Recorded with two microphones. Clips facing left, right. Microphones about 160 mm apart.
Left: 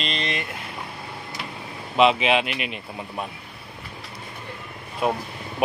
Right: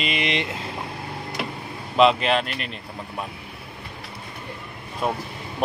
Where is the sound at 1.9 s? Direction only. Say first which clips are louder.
Right 1 dB; 5° left (ahead or behind).